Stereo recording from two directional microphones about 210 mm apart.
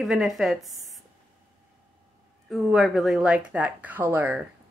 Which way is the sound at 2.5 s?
Centre (ahead or behind).